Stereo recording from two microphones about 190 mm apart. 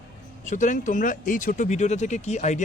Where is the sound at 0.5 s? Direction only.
40° left (ahead or behind).